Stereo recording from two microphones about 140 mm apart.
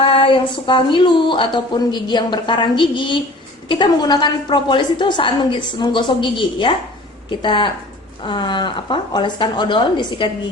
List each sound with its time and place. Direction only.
0.0 s a woman's voice: 40° left (ahead or behind)